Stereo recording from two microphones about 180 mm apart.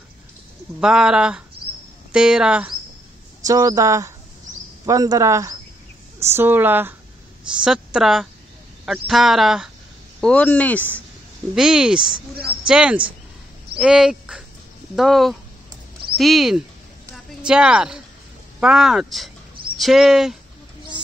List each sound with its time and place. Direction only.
0.7 s speech: 5° right (ahead or behind)
3.4 s speech: 20° right (ahead or behind); by 11.0 s 10° left (ahead or behind)
11.5 s speech: 5° right (ahead or behind)
17.1 s a sound: 5° right (ahead or behind)
18.6 s speech: 5° right (ahead or behind)